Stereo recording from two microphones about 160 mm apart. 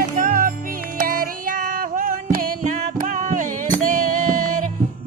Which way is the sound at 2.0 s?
65° right (ahead or behind).